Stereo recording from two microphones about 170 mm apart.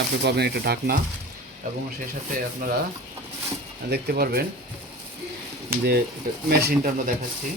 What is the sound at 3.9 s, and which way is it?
Speech, 65° right (ahead or behind).